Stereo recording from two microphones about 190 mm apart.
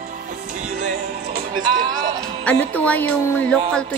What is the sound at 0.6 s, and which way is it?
Music, 40° right (ahead or behind).